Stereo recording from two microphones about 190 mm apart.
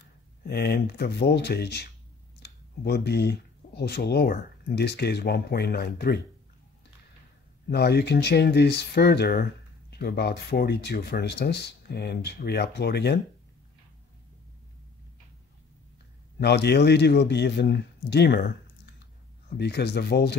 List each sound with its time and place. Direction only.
0.5 s speech: 55° left (ahead or behind)
7.7 s speech: 60° left (ahead or behind)
16.3 s speech: 60° left (ahead or behind)
19.5 s speech: 60° left (ahead or behind)